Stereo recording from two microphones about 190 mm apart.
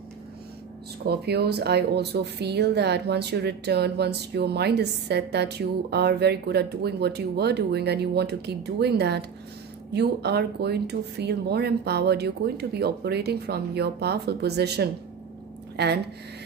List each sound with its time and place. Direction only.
1.0 s a woman's voice: 60° right (ahead or behind)